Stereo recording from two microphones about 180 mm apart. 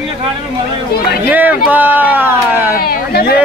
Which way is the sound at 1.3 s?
10° right (ahead or behind).